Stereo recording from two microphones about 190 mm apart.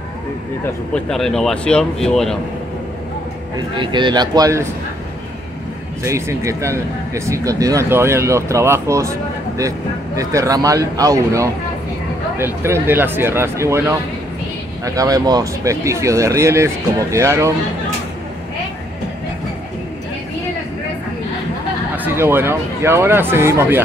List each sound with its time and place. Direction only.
0.9 s speech: 5° left (ahead or behind)
3.5 s speech: 25° right (ahead or behind)
6.0 s speech: 15° right (ahead or behind)
15.0 s speech: 20° right (ahead or behind)
21.9 s speech: 10° right (ahead or behind)